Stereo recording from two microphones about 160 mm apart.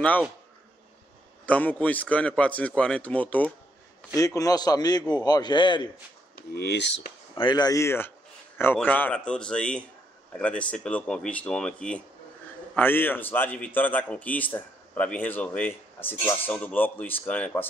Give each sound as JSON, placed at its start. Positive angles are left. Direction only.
{"t": 1.4, "sound": "speech", "side_deg": 10}
{"t": 4.1, "sound": "a man's voice", "side_deg": 20}
{"t": 6.3, "sound": "speech", "side_deg": 85}
{"t": 7.3, "sound": "a man's voice", "side_deg": 30}